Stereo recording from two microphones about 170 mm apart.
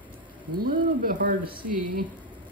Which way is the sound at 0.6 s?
55° right (ahead or behind).